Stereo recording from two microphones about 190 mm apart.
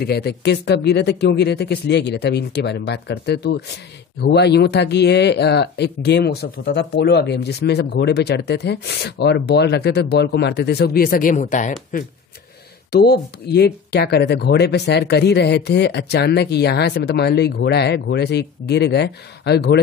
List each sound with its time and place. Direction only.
0.0 s speech: 55° left (ahead or behind); by 12.0 s 40° left (ahead or behind)
12.9 s speech: 55° left (ahead or behind)